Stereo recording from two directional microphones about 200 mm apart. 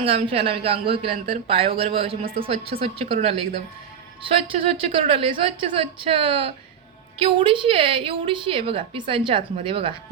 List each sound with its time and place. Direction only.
0.0 s a woman's voice: 30° right (ahead or behind)
4.9 s a woman's voice: 25° right (ahead or behind)